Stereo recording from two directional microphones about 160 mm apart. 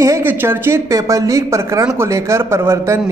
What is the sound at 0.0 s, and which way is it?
A woman's voice, 15° right (ahead or behind).